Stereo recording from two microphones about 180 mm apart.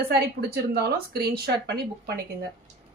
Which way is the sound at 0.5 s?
60° right (ahead or behind).